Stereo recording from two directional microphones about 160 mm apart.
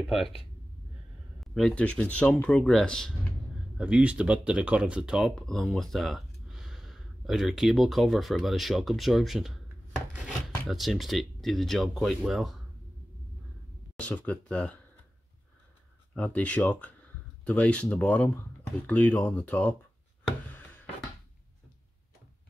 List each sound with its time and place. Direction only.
0.0 s speech: centre (ahead or behind)
1.4 s speech: centre (ahead or behind)
3.7 s speech: 5° right (ahead or behind)
13.9 s speech: 10° left (ahead or behind)
16.2 s speech: 10° left (ahead or behind)
20.4 s a sound: 10° left (ahead or behind)